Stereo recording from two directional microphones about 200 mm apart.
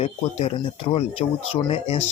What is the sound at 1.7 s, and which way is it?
Speech, 30° left (ahead or behind).